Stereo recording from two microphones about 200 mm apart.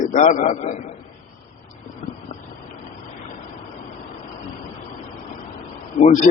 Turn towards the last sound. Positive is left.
turn(degrees=40)  # may be behind; listen again after turning